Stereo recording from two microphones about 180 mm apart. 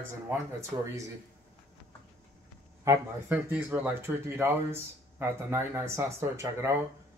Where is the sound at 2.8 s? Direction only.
15° right (ahead or behind).